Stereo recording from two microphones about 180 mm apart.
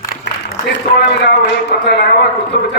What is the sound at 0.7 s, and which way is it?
A man's voice, 70° left (ahead or behind).